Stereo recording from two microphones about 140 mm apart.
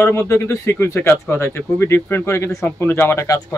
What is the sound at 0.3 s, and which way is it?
Speech, 20° left (ahead or behind).